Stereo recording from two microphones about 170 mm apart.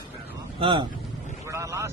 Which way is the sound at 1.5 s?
20° right (ahead or behind).